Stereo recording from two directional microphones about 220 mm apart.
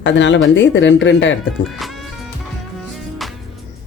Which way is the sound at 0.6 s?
55° left (ahead or behind).